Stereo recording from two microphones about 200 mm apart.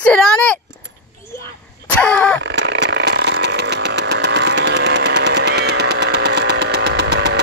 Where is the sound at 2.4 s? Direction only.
60° right (ahead or behind).